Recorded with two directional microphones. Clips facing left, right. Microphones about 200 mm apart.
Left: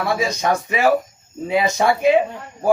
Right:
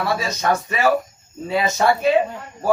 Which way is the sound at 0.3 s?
15° left (ahead or behind).